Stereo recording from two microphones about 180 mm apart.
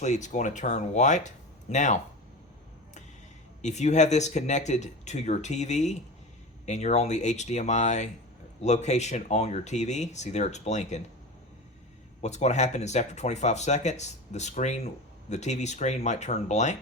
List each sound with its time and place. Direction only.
0.0 s speech: 40° left (ahead or behind)
3.6 s speech: 40° left (ahead or behind)
12.2 s speech: 40° left (ahead or behind)